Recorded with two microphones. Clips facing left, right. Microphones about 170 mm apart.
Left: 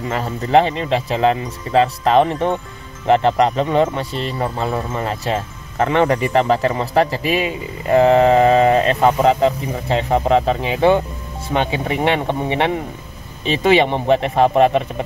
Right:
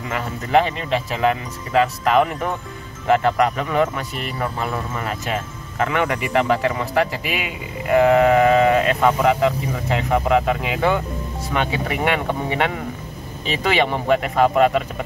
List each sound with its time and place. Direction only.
0.1 s speech: 35° left (ahead or behind)